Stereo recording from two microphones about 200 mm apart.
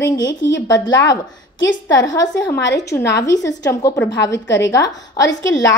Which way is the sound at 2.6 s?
60° left (ahead or behind).